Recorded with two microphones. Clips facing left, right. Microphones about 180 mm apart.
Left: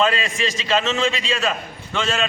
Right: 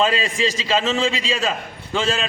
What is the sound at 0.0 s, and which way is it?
A man's voice, 30° right (ahead or behind).